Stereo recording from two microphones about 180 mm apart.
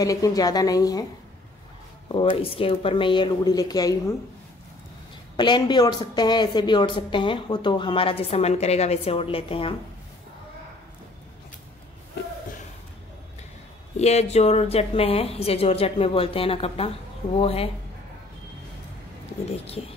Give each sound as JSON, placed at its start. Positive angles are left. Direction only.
{"t": 0.0, "sound": "a woman's voice", "side_deg": 20}
{"t": 2.0, "sound": "a woman's voice", "side_deg": 30}
{"t": 5.3, "sound": "a woman's voice", "side_deg": 25}
{"t": 13.9, "sound": "a woman's voice", "side_deg": 35}
{"t": 19.8, "sound": "a woman's voice", "side_deg": 30}